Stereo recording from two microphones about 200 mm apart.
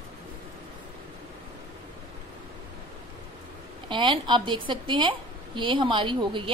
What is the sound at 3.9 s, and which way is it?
A woman's voice, 25° right (ahead or behind).